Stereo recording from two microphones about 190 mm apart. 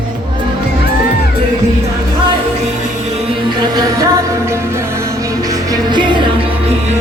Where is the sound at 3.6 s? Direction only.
15° right (ahead or behind).